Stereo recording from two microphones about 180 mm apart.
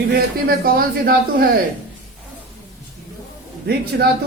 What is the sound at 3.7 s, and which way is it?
Speech, 55° right (ahead or behind).